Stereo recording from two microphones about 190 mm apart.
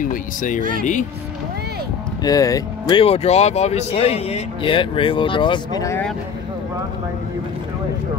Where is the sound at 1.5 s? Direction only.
55° right (ahead or behind).